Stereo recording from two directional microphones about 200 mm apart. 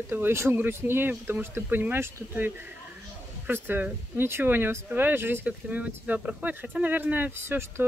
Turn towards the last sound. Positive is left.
turn(degrees=-10)  # may be behind; listen again after turning